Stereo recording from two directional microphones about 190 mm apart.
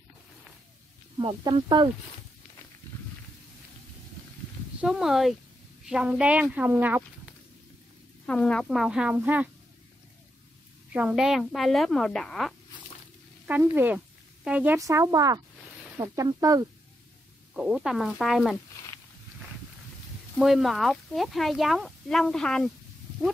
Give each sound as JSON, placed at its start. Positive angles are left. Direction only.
{"t": 1.2, "sound": "speech", "side_deg": -25}
{"t": 4.7, "sound": "speech", "side_deg": 0}
{"t": 8.3, "sound": "speech", "side_deg": 5}
{"t": 10.9, "sound": "speech", "side_deg": -5}
{"t": 13.5, "sound": "speech", "side_deg": -10}
{"t": 17.6, "sound": "speech", "side_deg": 0}
{"t": 20.3, "sound": "speech", "side_deg": 0}